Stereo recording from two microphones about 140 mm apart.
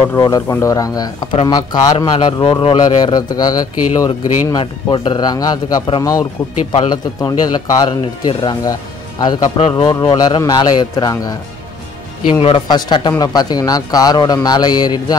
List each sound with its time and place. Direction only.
0.1 s speech: 25° left (ahead or behind)
9.6 s speech: 40° left (ahead or behind)
12.4 s speech: 40° left (ahead or behind)